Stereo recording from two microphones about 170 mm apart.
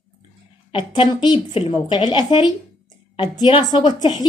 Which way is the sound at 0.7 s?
30° left (ahead or behind).